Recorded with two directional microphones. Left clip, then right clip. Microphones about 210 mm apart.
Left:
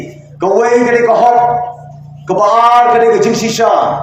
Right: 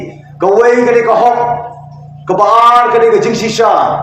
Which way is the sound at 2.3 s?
20° right (ahead or behind).